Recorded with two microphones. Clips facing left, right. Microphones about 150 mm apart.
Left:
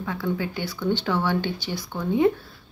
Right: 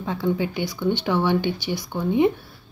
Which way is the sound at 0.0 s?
25° right (ahead or behind).